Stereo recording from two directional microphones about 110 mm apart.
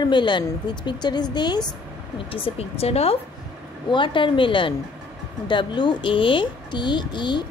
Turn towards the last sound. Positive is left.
turn(degrees=45)  # may be behind; listen again after turning